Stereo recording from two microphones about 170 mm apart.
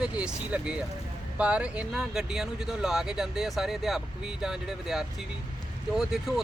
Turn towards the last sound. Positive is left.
turn(degrees=0)  # may be behind; listen again after turning